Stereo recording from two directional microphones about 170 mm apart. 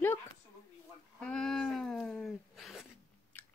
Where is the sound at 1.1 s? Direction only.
5° left (ahead or behind).